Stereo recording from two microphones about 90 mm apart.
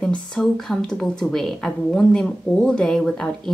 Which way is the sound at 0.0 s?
5° left (ahead or behind).